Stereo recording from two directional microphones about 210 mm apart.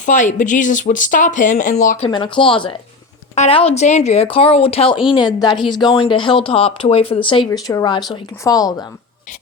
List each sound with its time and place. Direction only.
0.0 s speech: 35° left (ahead or behind)
2.0 s a woman's voice: 20° left (ahead or behind)